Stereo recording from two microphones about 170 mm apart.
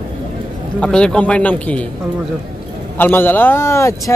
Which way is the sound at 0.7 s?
5° left (ahead or behind).